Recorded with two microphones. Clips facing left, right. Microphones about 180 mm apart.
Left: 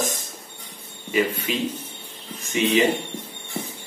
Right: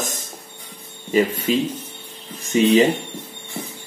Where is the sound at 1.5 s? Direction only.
40° right (ahead or behind).